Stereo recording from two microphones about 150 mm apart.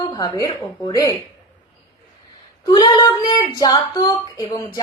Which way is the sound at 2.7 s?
25° left (ahead or behind).